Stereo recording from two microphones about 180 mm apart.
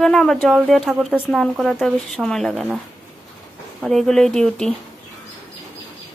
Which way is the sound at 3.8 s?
Centre (ahead or behind).